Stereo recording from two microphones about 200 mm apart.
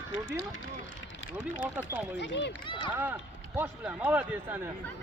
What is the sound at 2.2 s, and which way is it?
Speech, 60° left (ahead or behind).